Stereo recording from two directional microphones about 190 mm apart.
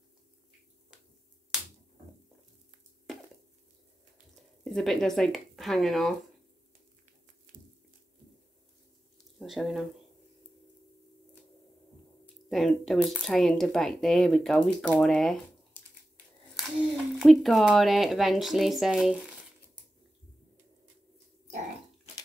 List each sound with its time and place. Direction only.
4.6 s speech: centre (ahead or behind)
7.5 s a sound: 45° right (ahead or behind)
9.4 s speech: centre (ahead or behind)
12.4 s speech: centre (ahead or behind)